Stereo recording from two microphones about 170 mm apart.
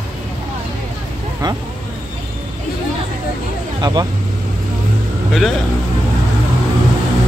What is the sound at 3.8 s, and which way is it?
Speech, 25° right (ahead or behind).